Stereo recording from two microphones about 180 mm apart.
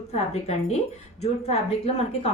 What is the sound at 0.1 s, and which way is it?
Speech, 35° left (ahead or behind).